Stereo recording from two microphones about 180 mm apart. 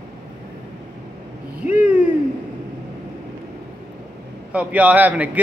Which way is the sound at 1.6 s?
40° left (ahead or behind).